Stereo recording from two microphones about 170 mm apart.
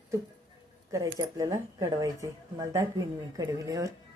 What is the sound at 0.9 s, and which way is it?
Speech, 20° right (ahead or behind).